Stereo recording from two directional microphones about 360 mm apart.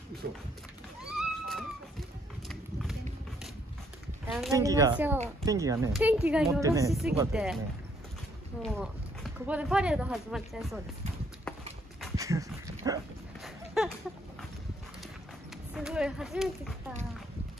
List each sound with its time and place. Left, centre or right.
0.2 s speech: right
1.1 s a sound: centre
4.3 s speech: centre
8.6 s speech: centre
12.0 s dog: centre
15.7 s speech: centre